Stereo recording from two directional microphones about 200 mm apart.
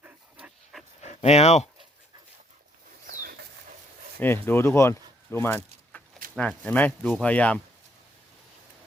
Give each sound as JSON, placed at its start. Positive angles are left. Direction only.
{"t": 0.0, "sound": "dog", "side_deg": -5}
{"t": 1.0, "sound": "speech", "side_deg": 35}
{"t": 3.1, "sound": "dog", "side_deg": -45}
{"t": 4.2, "sound": "speech", "side_deg": 10}